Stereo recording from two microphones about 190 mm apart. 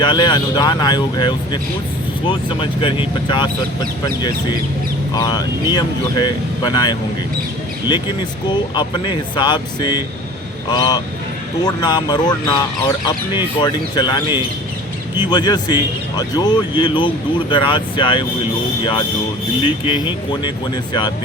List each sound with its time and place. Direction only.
0.0 s speech: 25° left (ahead or behind)
5.1 s speech: 20° left (ahead or behind)
8.4 s speech: 25° left (ahead or behind)
19.6 s speech: 25° left (ahead or behind)